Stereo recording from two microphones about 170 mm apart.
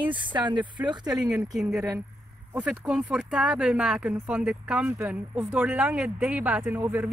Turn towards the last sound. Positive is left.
turn(degrees=-10)  # may be behind; listen again after turning